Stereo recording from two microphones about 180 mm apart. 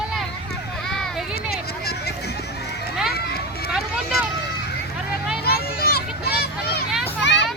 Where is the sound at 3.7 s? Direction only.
5° right (ahead or behind).